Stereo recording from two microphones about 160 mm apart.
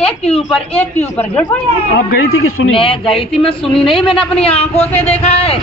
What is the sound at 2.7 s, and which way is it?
Speech, 35° left (ahead or behind).